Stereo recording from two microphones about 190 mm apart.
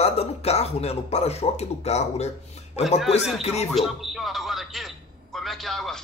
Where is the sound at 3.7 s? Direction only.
Centre (ahead or behind).